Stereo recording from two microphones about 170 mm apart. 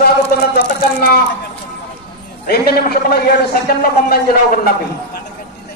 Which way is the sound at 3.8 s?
60° left (ahead or behind).